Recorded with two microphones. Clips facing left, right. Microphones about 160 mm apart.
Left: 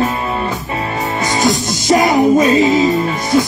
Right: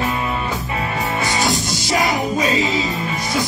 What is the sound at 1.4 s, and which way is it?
Music, 45° left (ahead or behind).